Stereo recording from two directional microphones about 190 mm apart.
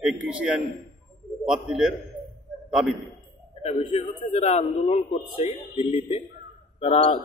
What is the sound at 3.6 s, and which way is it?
A man's voice, 30° left (ahead or behind).